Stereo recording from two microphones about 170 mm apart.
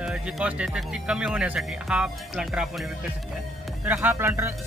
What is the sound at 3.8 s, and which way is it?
Speech, 10° right (ahead or behind).